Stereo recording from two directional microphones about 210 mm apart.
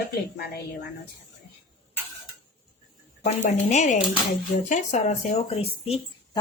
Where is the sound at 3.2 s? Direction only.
35° left (ahead or behind).